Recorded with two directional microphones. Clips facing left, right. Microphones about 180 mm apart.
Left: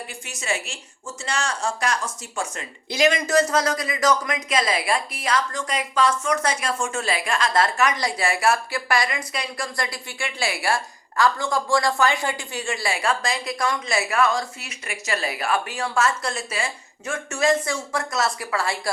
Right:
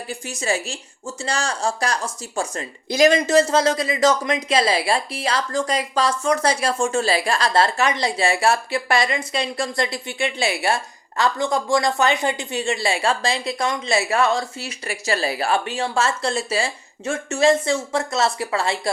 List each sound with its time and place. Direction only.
0.1 s a woman's voice: 35° right (ahead or behind)
3.2 s a woman's voice: 25° right (ahead or behind)